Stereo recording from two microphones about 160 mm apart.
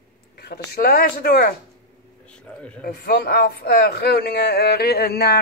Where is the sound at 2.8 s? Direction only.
70° left (ahead or behind).